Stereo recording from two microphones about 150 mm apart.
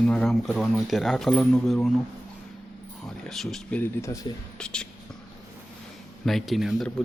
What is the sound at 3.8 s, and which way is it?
Speech, 20° left (ahead or behind).